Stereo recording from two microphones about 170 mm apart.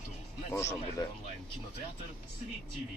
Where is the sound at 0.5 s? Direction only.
15° left (ahead or behind).